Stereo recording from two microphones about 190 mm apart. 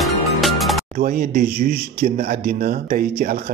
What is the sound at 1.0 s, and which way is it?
Speech, 50° right (ahead or behind).